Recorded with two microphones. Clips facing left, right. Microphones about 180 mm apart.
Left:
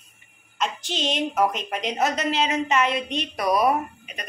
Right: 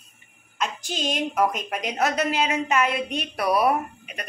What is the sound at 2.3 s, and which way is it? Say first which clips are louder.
Speech: left 1 dB; 10° right (ahead or behind).